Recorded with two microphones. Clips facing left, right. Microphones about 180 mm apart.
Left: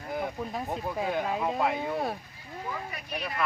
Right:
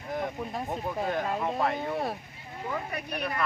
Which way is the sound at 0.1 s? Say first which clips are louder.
Even; centre (ahead or behind).